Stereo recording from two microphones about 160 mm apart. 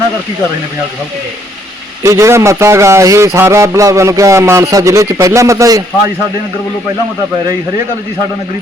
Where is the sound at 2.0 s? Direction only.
20° right (ahead or behind).